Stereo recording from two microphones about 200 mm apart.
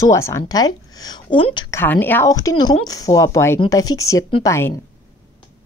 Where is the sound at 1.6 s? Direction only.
10° left (ahead or behind).